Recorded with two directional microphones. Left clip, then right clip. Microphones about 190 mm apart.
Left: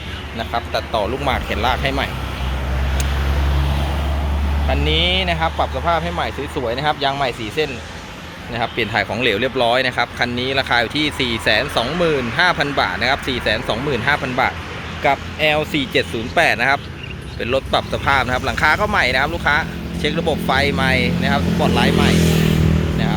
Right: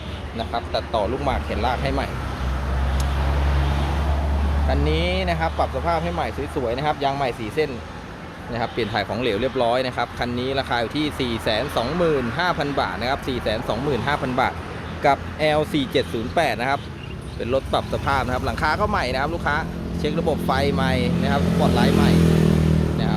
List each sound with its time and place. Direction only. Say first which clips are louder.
0.5 s speech: left 3 dB; 10° right (ahead or behind)
4.7 s speech: left 6 dB; 10° right (ahead or behind)
22.1 s speech: left 2 dB; 45° right (ahead or behind)